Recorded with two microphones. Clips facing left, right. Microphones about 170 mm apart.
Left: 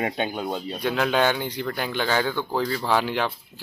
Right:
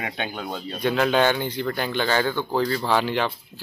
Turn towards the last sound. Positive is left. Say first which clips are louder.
# right 1 dB
turn(degrees=10)  # may be behind; listen again after turning